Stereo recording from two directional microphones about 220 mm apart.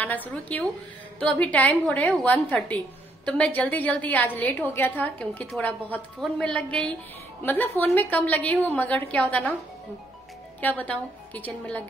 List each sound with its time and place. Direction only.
0.0 s a woman's voice: 10° left (ahead or behind)
10.6 s a woman's voice: 5° left (ahead or behind)